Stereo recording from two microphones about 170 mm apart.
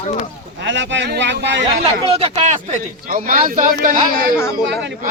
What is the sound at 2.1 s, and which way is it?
A man's voice, 40° right (ahead or behind).